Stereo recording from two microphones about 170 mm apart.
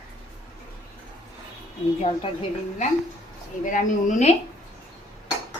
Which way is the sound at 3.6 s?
50° left (ahead or behind).